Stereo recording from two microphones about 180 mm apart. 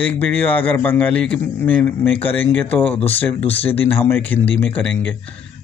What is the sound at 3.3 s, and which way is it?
Speech, 35° left (ahead or behind).